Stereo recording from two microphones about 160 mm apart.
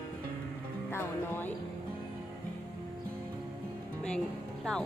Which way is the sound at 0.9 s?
15° left (ahead or behind).